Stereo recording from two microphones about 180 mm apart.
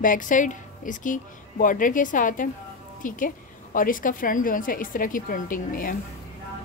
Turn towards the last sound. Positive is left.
turn(degrees=50)  # may be behind; listen again after turning